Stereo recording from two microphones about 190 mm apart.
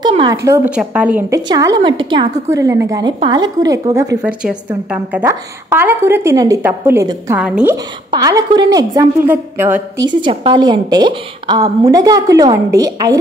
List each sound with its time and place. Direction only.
0.0 s a woman's voice: 25° right (ahead or behind); by 1.4 s 10° right (ahead or behind)
1.5 s a woman's voice: 20° right (ahead or behind)
4.2 s a woman's voice: 5° right (ahead or behind)
7.4 s a woman's voice: 5° right (ahead or behind)
8.1 s a woman's voice: 20° right (ahead or behind)
10.0 s a woman's voice: 25° right (ahead or behind)